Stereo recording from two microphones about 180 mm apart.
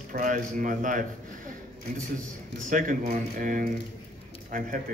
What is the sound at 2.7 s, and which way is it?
A man's voice, 45° right (ahead or behind).